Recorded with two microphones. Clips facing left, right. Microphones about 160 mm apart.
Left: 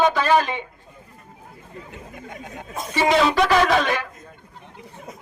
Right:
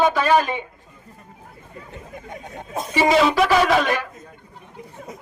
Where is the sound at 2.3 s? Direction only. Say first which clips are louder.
Right 4 dB; 30° right (ahead or behind).